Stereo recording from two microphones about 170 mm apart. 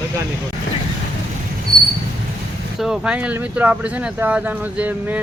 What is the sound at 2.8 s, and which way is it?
Speech, 5° right (ahead or behind).